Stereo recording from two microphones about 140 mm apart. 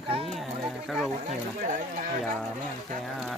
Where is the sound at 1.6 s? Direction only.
65° right (ahead or behind).